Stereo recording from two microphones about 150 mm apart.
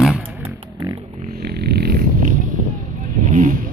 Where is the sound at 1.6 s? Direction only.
90° right.